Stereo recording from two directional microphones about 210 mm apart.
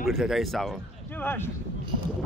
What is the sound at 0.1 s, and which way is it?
Speech, centre (ahead or behind).